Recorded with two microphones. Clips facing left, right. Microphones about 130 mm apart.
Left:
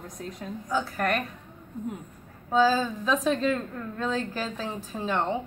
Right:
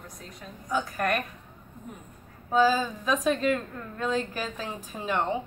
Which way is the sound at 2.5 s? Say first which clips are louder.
Even; 10° right (ahead or behind).